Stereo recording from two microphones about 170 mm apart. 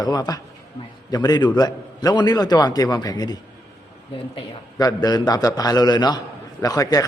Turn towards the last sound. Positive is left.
turn(degrees=20)  # may be behind; listen again after turning